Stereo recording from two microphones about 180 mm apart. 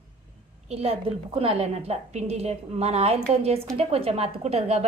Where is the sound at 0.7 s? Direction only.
35° right (ahead or behind).